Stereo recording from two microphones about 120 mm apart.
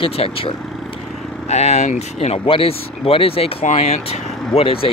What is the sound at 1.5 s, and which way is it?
Speech, 65° left (ahead or behind).